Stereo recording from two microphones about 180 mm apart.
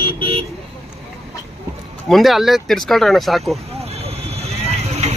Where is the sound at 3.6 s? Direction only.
35° right (ahead or behind).